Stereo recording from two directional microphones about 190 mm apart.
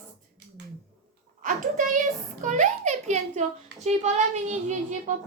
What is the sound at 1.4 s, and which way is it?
A child's voice, 45° right (ahead or behind).